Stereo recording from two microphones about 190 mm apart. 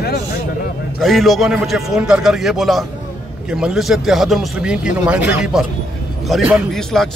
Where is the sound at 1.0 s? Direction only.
Centre (ahead or behind).